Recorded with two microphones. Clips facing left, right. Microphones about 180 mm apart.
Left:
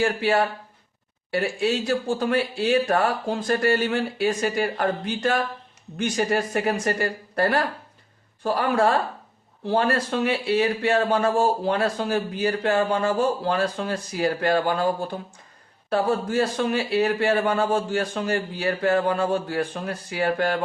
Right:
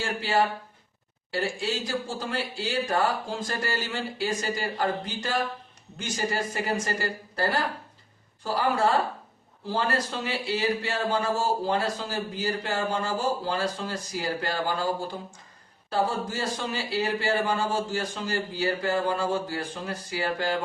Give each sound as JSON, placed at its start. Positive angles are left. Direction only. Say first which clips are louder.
{"t": 0.0, "sound": "a man's voice", "louder": "left 4 dB", "side_deg": 60}